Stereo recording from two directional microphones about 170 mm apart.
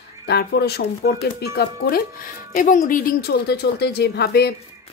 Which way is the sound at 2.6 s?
50° left (ahead or behind).